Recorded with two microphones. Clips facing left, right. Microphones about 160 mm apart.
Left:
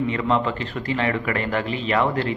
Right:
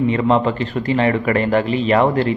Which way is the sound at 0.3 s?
20° right (ahead or behind).